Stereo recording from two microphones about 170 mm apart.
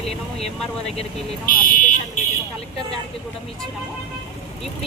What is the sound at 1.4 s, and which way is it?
Speech, 55° left (ahead or behind).